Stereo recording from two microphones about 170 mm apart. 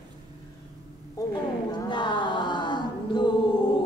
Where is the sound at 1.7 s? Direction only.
25° left (ahead or behind).